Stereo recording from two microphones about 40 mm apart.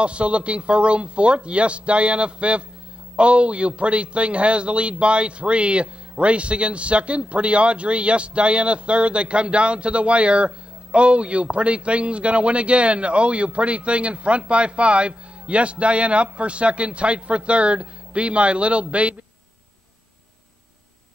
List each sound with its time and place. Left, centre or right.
0.0 s a man's voice: right